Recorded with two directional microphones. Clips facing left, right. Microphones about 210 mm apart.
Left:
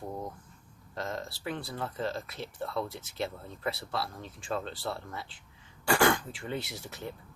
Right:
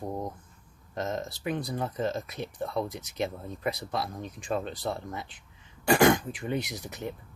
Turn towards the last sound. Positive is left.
turn(degrees=-20)  # may be behind; listen again after turning